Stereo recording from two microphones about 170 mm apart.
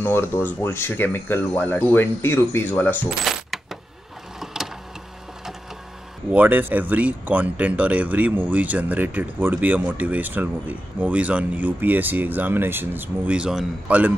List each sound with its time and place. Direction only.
0.0 s speech: 15° left (ahead or behind)
3.3 s coin: centre (ahead or behind)
6.3 s speech: 10° right (ahead or behind)